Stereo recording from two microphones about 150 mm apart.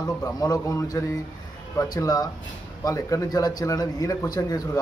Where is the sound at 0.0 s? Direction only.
25° left (ahead or behind).